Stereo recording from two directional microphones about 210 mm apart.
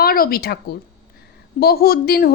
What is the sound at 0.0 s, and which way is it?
Speech, 45° left (ahead or behind).